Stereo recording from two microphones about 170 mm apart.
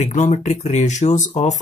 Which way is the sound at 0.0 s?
50° left (ahead or behind).